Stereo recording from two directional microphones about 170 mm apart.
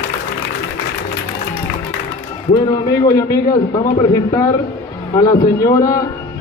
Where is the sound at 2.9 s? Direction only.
20° left (ahead or behind).